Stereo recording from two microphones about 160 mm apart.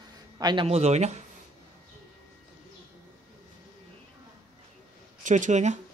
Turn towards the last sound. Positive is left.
turn(degrees=-50)  # may be behind; listen again after turning